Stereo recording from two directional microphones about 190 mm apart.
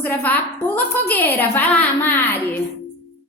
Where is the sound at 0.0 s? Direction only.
10° left (ahead or behind).